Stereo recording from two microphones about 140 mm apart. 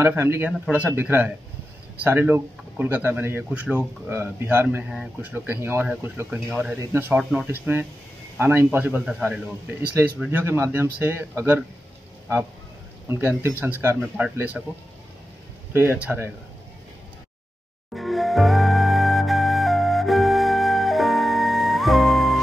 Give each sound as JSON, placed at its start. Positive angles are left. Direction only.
{"t": 0.0, "sound": "speech", "side_deg": -15}
{"t": 13.1, "sound": "speech", "side_deg": -15}
{"t": 15.7, "sound": "speech", "side_deg": -15}
{"t": 17.9, "sound": "flute", "side_deg": 0}